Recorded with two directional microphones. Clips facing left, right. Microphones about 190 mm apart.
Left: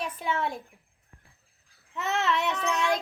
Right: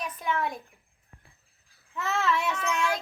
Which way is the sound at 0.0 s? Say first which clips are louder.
Even; 25° left (ahead or behind).